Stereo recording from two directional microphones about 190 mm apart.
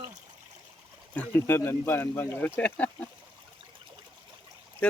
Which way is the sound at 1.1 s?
10° left (ahead or behind).